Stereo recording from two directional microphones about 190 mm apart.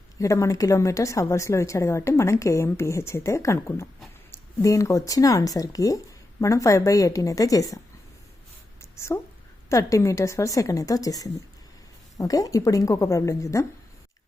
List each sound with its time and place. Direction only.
0.2 s a woman's voice: 15° left (ahead or behind)
8.8 s a sound: 15° left (ahead or behind)
9.6 s a woman's voice: 15° left (ahead or behind)